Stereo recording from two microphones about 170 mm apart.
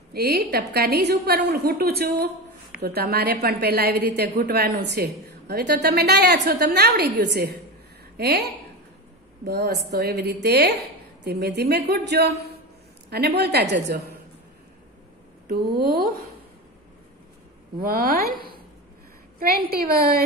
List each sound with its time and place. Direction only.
0.1 s a woman's voice: 65° right (ahead or behind)
15.4 s a woman's voice: 65° right (ahead or behind)
17.7 s a woman's voice: 60° right (ahead or behind)